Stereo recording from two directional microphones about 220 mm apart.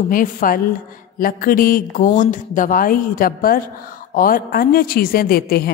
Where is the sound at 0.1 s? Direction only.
40° left (ahead or behind).